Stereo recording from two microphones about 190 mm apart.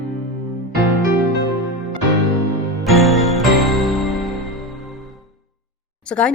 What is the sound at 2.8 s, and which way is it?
Music, centre (ahead or behind).